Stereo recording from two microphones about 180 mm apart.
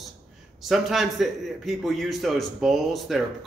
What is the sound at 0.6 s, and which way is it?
A man's voice, centre (ahead or behind).